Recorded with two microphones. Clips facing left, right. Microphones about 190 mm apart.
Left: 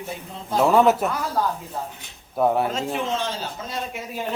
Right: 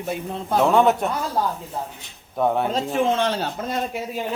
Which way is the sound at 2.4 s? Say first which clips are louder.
Left 1 dB; 5° left (ahead or behind).